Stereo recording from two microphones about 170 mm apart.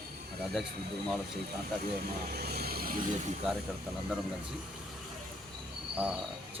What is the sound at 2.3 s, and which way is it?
Vehicle, 65° right (ahead or behind).